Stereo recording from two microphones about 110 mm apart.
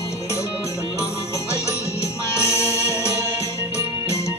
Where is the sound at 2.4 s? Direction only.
25° left (ahead or behind).